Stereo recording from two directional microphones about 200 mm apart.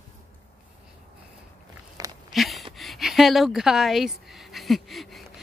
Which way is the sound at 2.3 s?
Centre (ahead or behind).